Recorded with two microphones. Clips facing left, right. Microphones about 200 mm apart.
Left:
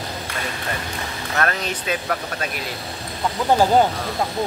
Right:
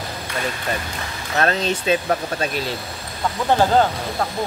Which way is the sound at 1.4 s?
25° right (ahead or behind).